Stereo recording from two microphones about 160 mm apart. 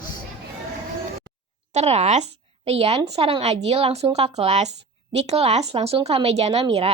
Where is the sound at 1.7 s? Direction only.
45° right (ahead or behind).